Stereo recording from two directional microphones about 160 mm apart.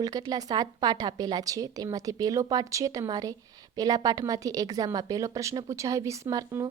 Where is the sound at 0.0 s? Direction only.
25° right (ahead or behind).